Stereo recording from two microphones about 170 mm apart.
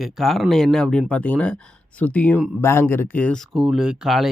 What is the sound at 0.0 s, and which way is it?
Speech, centre (ahead or behind).